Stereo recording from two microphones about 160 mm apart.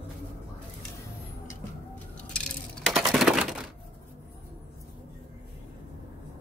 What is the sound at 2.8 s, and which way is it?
Typewriter, centre (ahead or behind).